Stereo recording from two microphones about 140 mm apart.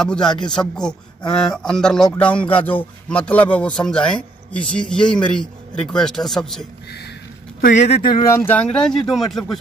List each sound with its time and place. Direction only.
0.0 s a man's voice: 5° left (ahead or behind)
7.6 s speech: 55° left (ahead or behind)
8.0 s speech: 35° left (ahead or behind)
8.3 s a man's voice: 15° left (ahead or behind)